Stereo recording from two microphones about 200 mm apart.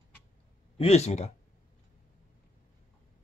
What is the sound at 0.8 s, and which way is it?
Speech, 30° left (ahead or behind).